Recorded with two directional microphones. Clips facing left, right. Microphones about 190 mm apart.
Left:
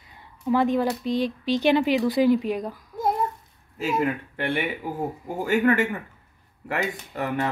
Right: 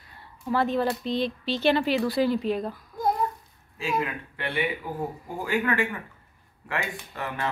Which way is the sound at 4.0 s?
45° left (ahead or behind).